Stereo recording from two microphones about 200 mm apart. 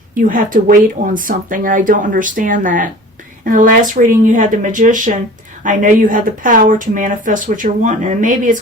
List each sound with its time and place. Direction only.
0.1 s speech: 40° right (ahead or behind)